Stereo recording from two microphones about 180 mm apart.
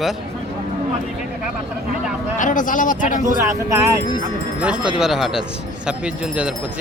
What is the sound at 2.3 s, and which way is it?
Speech, 45° left (ahead or behind).